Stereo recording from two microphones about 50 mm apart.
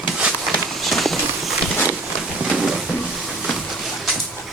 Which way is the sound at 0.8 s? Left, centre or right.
Centre.